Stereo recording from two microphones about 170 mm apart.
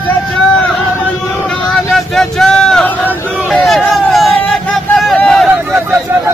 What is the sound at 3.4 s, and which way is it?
Hubbub, 5° left (ahead or behind).